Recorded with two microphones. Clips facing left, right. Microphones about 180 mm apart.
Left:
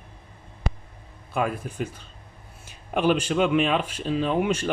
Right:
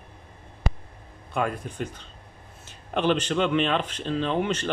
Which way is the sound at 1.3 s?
5° left (ahead or behind).